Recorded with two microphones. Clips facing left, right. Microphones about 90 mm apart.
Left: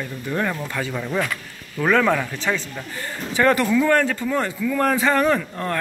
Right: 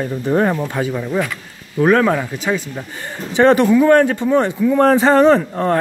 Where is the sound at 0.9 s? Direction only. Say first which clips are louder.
Right 4 dB; 5° right (ahead or behind).